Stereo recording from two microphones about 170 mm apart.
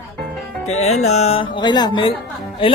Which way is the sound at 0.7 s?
40° left (ahead or behind).